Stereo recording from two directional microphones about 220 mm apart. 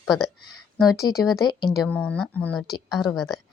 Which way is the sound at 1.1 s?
55° left (ahead or behind).